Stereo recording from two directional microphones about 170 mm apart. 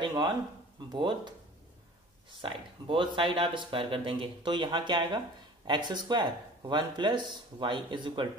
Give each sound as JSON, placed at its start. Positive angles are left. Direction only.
{"t": 0.0, "sound": "a sound", "side_deg": -25}
{"t": 0.9, "sound": "speech", "side_deg": -30}
{"t": 2.4, "sound": "speech", "side_deg": -30}